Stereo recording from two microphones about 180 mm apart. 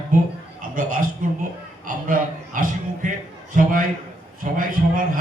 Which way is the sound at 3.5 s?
45° right (ahead or behind).